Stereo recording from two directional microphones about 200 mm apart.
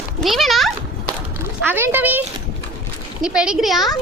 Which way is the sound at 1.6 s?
10° right (ahead or behind).